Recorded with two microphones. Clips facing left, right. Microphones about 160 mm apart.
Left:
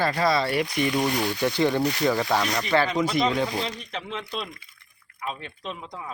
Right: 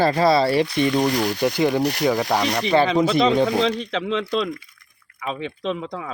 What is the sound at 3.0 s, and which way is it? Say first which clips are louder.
Speech: right 6 dB; 25° right (ahead or behind).